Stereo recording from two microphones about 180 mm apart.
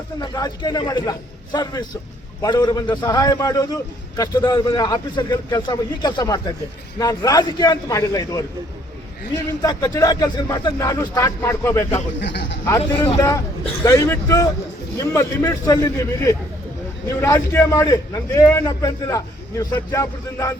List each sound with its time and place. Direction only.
0.2 s speech: 20° left (ahead or behind)
9.6 s speech: 20° left (ahead or behind)
12.2 s speech: 80° left
13.1 s a man's voice: 15° left (ahead or behind)